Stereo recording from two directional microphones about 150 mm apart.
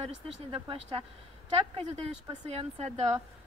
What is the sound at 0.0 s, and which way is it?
A woman's voice, 40° right (ahead or behind).